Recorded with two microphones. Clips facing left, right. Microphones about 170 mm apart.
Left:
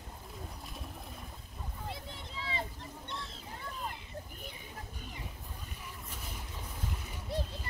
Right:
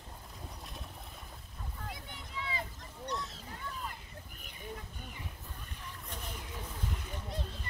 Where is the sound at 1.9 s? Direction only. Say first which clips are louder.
Left 1 dB; 30° left (ahead or behind).